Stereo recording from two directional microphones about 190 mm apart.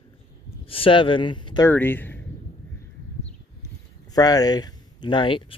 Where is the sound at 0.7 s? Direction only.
30° left (ahead or behind).